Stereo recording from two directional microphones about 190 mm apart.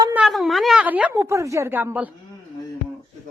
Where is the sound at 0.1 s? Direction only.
5° right (ahead or behind).